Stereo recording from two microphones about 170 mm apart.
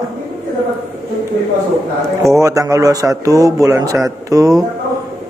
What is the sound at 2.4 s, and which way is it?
A man's voice, 20° right (ahead or behind).